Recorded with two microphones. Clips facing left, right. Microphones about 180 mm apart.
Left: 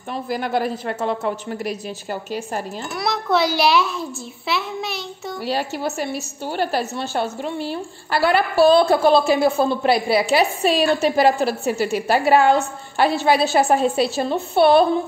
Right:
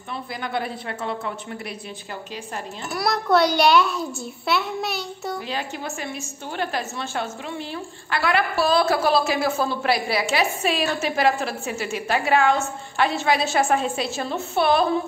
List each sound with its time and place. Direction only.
0.1 s a woman's voice: 45° left (ahead or behind)
2.9 s a child's voice: centre (ahead or behind)
5.5 s a woman's voice: 40° left (ahead or behind)